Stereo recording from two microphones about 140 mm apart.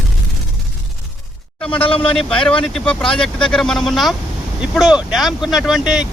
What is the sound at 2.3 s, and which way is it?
Speech, 5° left (ahead or behind).